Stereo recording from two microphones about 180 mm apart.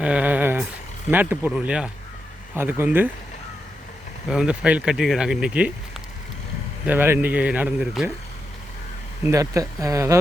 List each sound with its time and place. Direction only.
0.0 s a sound: 5° right (ahead or behind)
1.1 s speech: 10° right (ahead or behind)
4.3 s speech: 5° right (ahead or behind)
9.2 s speech: 20° right (ahead or behind)